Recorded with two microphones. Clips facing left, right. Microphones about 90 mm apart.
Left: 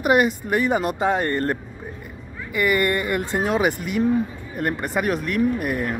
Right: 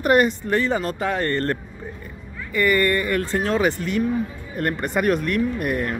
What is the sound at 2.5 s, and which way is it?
Speech, 15° left (ahead or behind).